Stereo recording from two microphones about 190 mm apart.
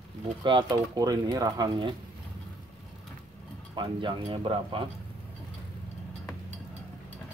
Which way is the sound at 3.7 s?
25° right (ahead or behind).